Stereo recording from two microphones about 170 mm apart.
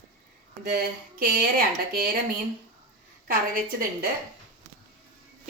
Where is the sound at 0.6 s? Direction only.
60° right (ahead or behind).